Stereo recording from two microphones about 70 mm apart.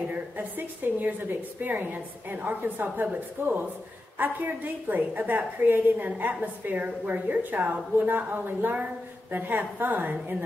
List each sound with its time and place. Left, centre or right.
0.1 s a woman's voice: right